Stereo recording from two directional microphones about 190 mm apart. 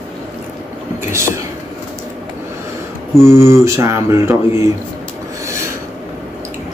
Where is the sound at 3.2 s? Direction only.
15° right (ahead or behind).